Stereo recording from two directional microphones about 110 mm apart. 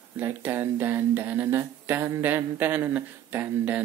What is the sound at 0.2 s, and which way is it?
Speech, 15° right (ahead or behind).